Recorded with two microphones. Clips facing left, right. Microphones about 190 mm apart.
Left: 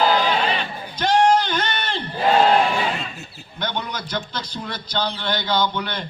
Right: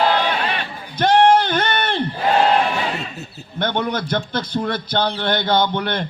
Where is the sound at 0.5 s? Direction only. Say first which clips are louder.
Even; 55° right (ahead or behind).